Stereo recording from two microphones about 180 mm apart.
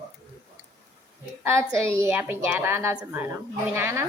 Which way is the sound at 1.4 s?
15° right (ahead or behind).